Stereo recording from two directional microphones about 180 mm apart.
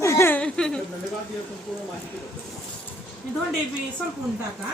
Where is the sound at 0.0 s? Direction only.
15° left (ahead or behind).